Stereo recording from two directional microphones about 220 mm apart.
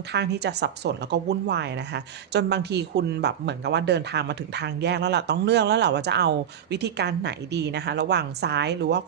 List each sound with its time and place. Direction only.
0.1 s speech: 50° right (ahead or behind)